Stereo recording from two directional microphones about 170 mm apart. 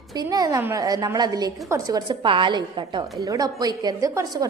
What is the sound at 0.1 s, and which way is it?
A woman's voice, 20° right (ahead or behind).